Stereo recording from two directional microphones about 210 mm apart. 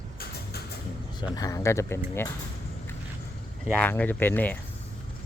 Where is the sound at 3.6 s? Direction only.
5° left (ahead or behind).